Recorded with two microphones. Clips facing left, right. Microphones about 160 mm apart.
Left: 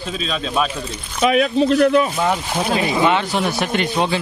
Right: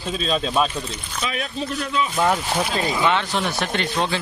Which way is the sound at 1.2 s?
65° left (ahead or behind).